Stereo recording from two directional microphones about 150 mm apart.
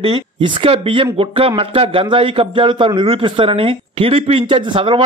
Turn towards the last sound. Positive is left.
turn(degrees=-35)  # may be behind; listen again after turning